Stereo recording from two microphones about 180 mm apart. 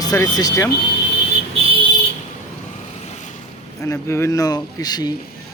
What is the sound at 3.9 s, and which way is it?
Speech, 15° left (ahead or behind).